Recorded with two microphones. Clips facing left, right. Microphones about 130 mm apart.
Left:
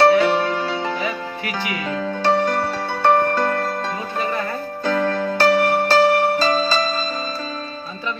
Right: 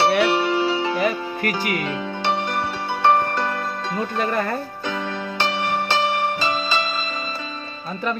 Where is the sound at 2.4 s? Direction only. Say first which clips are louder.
Left 4 dB; 40° left (ahead or behind).